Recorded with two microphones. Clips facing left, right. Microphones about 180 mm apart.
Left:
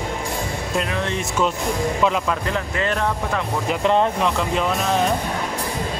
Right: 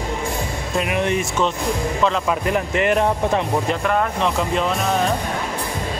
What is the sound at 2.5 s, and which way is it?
Speech, 20° right (ahead or behind).